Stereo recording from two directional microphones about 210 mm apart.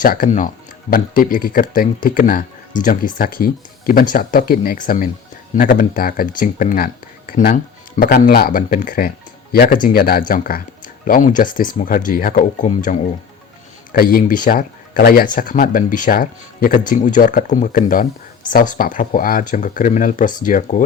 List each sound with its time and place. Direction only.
0.0 s speech: 40° left (ahead or behind)
14.0 s speech: 45° left (ahead or behind)